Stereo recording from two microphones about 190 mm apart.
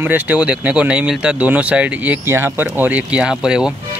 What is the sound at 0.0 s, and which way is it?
Speech, 10° right (ahead or behind).